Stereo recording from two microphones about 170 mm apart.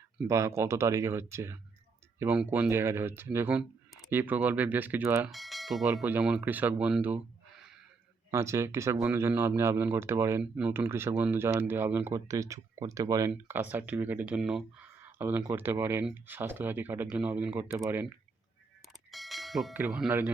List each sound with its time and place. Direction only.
0.3 s speech: 15° right (ahead or behind)
5.3 s speech: centre (ahead or behind)
8.3 s speech: 15° right (ahead or behind)
19.1 s a sound: centre (ahead or behind)
19.9 s speech: 5° right (ahead or behind)